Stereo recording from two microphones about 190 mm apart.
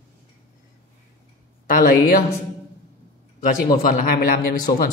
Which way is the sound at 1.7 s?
50° left (ahead or behind).